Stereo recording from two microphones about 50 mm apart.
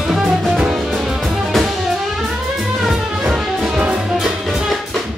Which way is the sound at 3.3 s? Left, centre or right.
Centre.